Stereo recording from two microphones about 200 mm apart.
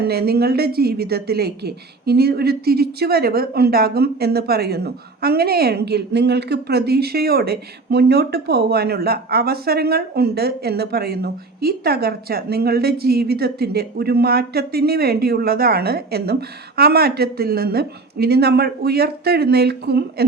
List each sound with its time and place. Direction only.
0.0 s a woman's voice: 50° right (ahead or behind)